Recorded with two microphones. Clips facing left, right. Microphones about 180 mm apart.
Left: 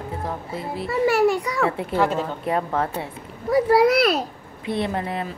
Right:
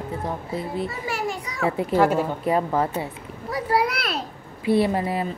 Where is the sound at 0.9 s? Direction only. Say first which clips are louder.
Left 10 dB; 70° left (ahead or behind).